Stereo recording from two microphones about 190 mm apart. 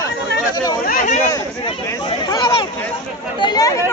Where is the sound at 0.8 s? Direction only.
45° left (ahead or behind).